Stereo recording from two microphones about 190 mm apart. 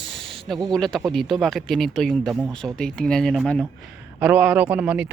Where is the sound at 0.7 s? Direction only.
Centre (ahead or behind).